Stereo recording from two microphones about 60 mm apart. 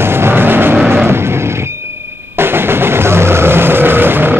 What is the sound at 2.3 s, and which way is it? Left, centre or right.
Vehicle, right.